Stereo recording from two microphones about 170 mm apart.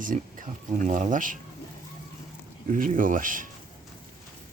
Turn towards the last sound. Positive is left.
turn(degrees=-50)  # may be behind; listen again after turning